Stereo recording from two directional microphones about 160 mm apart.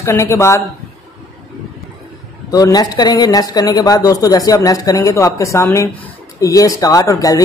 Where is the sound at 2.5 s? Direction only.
25° left (ahead or behind).